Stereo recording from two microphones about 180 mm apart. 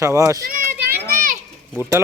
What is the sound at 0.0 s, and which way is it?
Speech, 15° right (ahead or behind).